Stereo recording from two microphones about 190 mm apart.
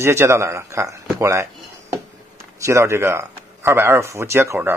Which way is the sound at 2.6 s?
15° right (ahead or behind).